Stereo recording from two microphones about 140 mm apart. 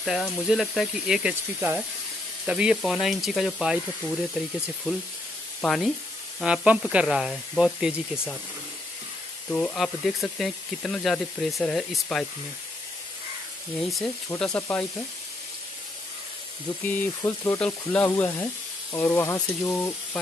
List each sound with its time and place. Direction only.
0.0 s speech: centre (ahead or behind)
1.3 s speech: 15° right (ahead or behind)
5.6 s speech: centre (ahead or behind)
6.4 s speech: 10° right (ahead or behind)
9.5 s speech: 5° left (ahead or behind)
13.7 s speech: centre (ahead or behind)
14.4 s frying: 5° left (ahead or behind)
16.8 s frying: 10° left (ahead or behind)